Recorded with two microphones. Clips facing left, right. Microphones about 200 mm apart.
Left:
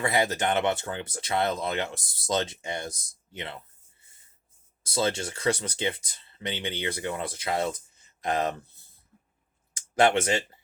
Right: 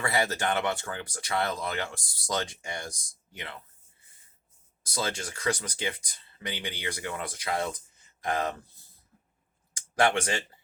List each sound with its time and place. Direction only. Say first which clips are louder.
0.0 s speech: left 3 dB; 20° left (ahead or behind)
4.8 s speech: left 5 dB; 25° left (ahead or behind)
9.7 s speech: left 3 dB; 25° left (ahead or behind)